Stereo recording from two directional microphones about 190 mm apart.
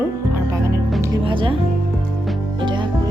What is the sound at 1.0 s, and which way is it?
Music, 25° right (ahead or behind).